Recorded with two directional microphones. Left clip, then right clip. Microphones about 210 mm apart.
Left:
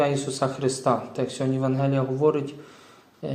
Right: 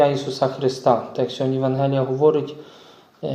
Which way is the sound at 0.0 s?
20° left (ahead or behind).